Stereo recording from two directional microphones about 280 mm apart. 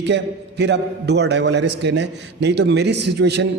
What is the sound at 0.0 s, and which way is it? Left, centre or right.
A man's voice, right.